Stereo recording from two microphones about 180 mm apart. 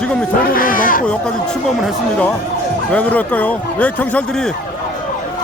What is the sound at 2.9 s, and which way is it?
Speech, 10° left (ahead or behind).